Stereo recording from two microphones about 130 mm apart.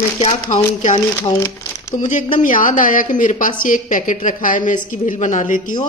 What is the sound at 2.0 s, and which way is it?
Speech, 75° left (ahead or behind).